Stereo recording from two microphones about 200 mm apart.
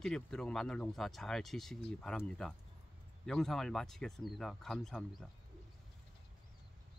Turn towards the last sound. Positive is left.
turn(degrees=0)  # may be behind; listen again after turning